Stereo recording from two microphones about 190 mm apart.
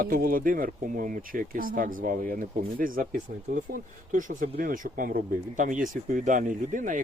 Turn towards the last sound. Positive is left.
turn(degrees=-45)  # may be behind; listen again after turning